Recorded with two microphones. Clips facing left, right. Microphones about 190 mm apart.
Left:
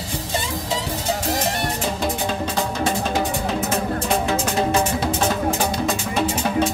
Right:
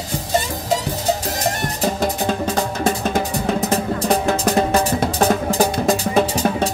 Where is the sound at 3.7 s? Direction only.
40° right (ahead or behind).